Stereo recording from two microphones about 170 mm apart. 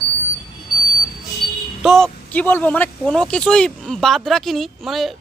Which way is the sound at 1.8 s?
Centre (ahead or behind).